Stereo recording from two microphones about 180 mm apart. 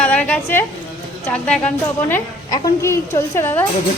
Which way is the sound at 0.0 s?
5° left (ahead or behind).